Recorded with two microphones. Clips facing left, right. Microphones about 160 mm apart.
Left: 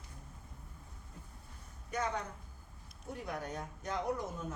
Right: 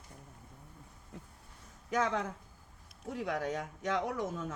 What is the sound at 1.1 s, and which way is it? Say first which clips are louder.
Speech: right 6 dB; 90° right.